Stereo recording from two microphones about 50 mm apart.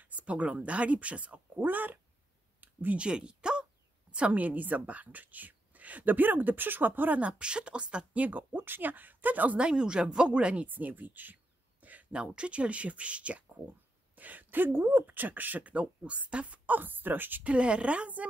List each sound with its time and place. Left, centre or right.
0.1 s speech: right
1.6 s a woman's voice: right
2.6 s a sound: right
3.0 s speech: centre
4.3 s a woman's voice: right
9.6 s speech: centre
10.7 s a woman's voice: right
12.1 s a woman's voice: right
15.7 s speech: right
17.5 s speech: right